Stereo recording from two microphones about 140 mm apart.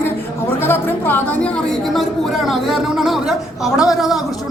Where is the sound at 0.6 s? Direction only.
15° left (ahead or behind).